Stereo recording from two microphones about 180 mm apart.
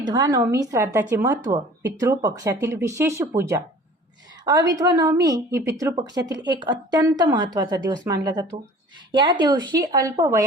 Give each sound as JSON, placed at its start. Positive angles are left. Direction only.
{"t": 0.0, "sound": "a woman's voice", "side_deg": -20}